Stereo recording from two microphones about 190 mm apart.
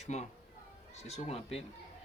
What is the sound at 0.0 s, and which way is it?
Speech, 35° left (ahead or behind).